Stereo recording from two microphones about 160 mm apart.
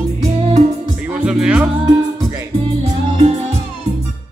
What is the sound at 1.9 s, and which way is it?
Music, 20° right (ahead or behind).